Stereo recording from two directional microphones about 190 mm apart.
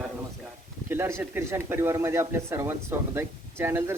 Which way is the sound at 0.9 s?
15° right (ahead or behind).